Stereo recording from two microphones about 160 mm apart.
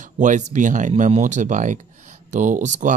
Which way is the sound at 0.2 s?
50° right (ahead or behind).